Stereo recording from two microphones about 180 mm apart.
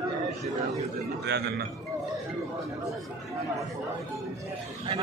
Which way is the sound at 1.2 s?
70° right (ahead or behind).